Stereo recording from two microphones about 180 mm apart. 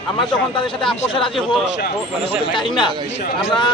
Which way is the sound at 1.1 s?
30° left (ahead or behind).